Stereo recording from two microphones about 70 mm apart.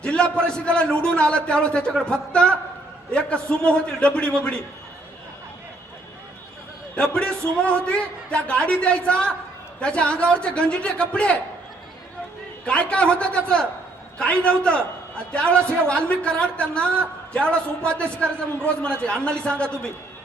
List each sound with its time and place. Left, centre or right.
0.0 s a man's voice: centre
6.9 s a man's voice: centre
12.6 s a man's voice: centre